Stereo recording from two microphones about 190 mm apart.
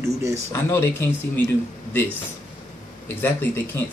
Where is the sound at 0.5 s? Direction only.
15° left (ahead or behind).